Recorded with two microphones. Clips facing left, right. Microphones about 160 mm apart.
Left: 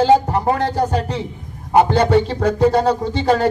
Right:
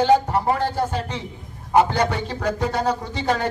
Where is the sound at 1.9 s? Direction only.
30° left (ahead or behind).